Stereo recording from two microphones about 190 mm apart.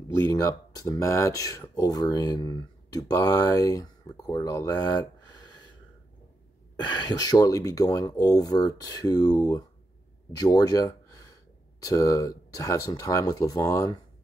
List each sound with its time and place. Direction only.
0.3 s speech: 20° left (ahead or behind)
6.9 s speech: 20° left (ahead or behind)